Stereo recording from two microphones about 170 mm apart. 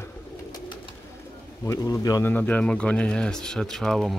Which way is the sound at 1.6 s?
20° left (ahead or behind).